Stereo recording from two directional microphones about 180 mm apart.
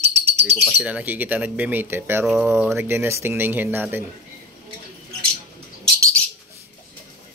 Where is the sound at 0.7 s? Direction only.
5° right (ahead or behind).